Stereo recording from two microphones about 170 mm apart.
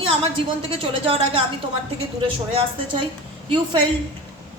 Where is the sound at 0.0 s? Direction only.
35° right (ahead or behind).